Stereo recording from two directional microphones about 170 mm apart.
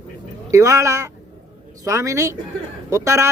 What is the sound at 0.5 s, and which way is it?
Speech, 20° right (ahead or behind).